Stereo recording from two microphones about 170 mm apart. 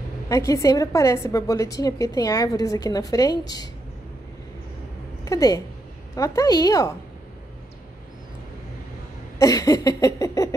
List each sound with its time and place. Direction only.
0.3 s a woman's voice: 20° left (ahead or behind)
5.2 s a woman's voice: 20° left (ahead or behind)
9.4 s a woman's voice: 20° left (ahead or behind)